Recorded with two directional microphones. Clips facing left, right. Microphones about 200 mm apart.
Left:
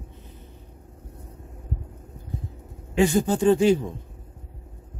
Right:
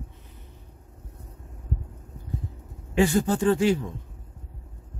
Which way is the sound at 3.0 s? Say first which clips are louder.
Left 2 dB; 15° left (ahead or behind).